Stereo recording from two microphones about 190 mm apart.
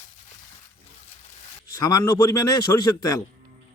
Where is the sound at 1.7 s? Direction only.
15° left (ahead or behind).